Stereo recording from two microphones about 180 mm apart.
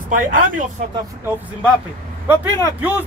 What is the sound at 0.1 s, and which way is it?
Speech, 50° right (ahead or behind).